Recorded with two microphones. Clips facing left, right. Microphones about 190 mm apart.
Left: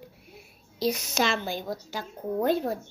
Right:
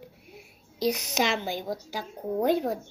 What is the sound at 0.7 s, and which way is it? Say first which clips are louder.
A woman's voice: even; 15° right (ahead or behind).